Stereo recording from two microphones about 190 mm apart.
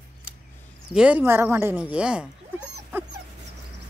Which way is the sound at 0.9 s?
5° right (ahead or behind).